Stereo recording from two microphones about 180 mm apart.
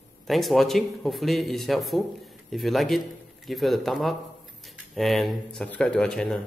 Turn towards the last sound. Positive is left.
turn(degrees=5)  # may be behind; listen again after turning